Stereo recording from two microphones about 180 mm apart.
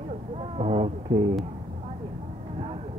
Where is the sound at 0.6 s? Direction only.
35° right (ahead or behind).